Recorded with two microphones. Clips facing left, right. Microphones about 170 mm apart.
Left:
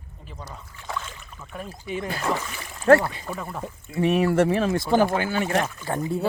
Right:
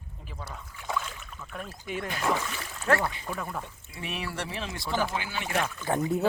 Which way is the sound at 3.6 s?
45° left (ahead or behind).